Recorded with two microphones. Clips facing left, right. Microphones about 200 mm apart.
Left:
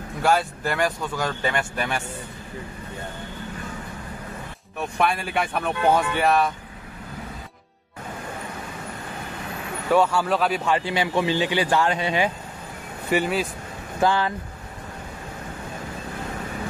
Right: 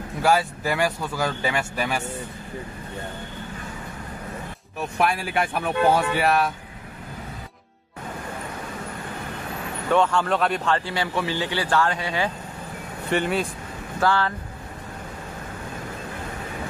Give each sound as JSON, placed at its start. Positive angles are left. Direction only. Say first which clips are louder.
{"t": 0.2, "sound": "speech", "louder": "right 1 dB", "side_deg": -5}
{"t": 4.7, "sound": "speech", "louder": "even", "side_deg": 0}
{"t": 9.8, "sound": "speech", "louder": "left 1 dB", "side_deg": 5}
{"t": 13.1, "sound": "speech", "louder": "left 1 dB", "side_deg": 5}
{"t": 13.9, "sound": "speech", "louder": "left 1 dB", "side_deg": 15}